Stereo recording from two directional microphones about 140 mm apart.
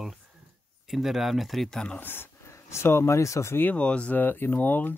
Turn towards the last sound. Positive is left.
turn(degrees=15)  # may be behind; listen again after turning